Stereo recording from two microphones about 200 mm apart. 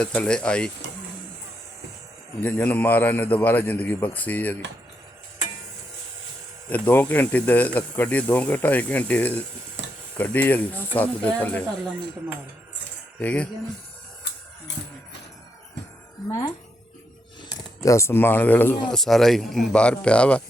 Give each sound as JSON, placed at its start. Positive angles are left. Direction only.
{"t": 0.0, "sound": "speech", "side_deg": 5}
{"t": 2.4, "sound": "speech", "side_deg": 10}
{"t": 6.7, "sound": "speech", "side_deg": 10}
{"t": 9.8, "sound": "a sound", "side_deg": -65}
{"t": 10.2, "sound": "speech", "side_deg": 10}
{"t": 13.1, "sound": "speech", "side_deg": 5}
{"t": 17.8, "sound": "speech", "side_deg": 15}